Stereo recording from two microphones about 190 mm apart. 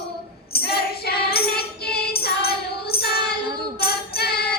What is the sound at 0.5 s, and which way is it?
Child singing, 55° left (ahead or behind).